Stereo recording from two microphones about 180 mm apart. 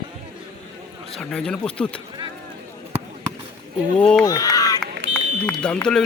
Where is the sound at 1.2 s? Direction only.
5° left (ahead or behind).